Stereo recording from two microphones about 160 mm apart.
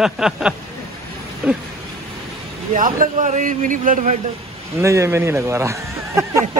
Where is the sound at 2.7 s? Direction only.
55° right (ahead or behind).